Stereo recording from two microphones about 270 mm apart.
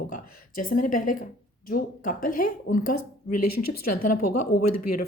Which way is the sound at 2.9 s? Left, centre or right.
Left.